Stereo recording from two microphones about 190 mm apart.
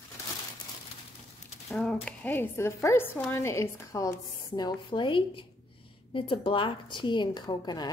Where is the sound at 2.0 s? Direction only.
10° left (ahead or behind).